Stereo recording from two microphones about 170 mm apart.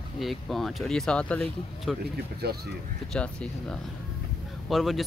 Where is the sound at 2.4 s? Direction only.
70° right (ahead or behind).